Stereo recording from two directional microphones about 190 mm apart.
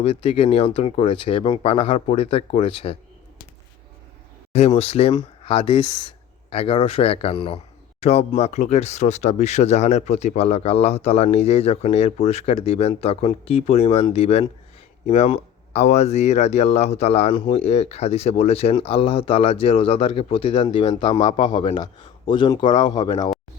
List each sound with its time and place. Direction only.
0.0 s speech: 30° left (ahead or behind)
4.5 s speech: 35° left (ahead or behind)